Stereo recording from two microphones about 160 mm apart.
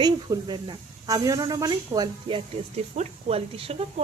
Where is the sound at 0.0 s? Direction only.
25° right (ahead or behind).